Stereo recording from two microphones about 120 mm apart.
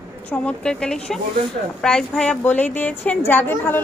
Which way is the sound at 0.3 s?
10° left (ahead or behind).